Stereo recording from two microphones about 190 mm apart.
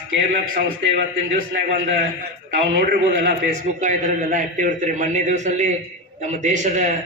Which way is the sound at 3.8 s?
40° right (ahead or behind).